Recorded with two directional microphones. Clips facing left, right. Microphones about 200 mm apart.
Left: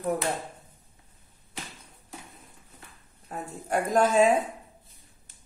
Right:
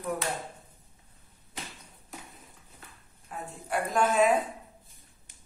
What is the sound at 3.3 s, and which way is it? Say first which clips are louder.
A woman's voice: left 4 dB; 45° left (ahead or behind).